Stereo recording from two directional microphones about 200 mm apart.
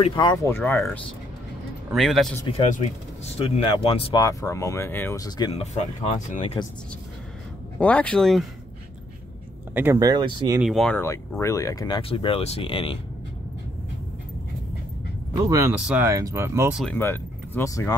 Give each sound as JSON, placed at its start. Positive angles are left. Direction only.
{"t": 0.0, "sound": "speech", "side_deg": 20}
{"t": 3.3, "sound": "speech", "side_deg": 25}
{"t": 4.2, "sound": "speech", "side_deg": 15}
{"t": 5.6, "sound": "speech", "side_deg": 35}
{"t": 7.8, "sound": "speech", "side_deg": 5}
{"t": 9.8, "sound": "speech", "side_deg": -15}
{"t": 10.6, "sound": "speech", "side_deg": 0}
{"t": 15.4, "sound": "speech", "side_deg": -15}
{"t": 16.7, "sound": "speech", "side_deg": 5}